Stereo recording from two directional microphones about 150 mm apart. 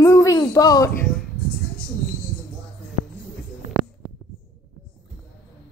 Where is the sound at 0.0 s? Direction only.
20° left (ahead or behind).